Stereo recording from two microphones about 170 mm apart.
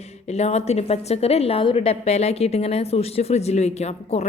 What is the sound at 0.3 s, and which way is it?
A woman's voice, 40° left (ahead or behind).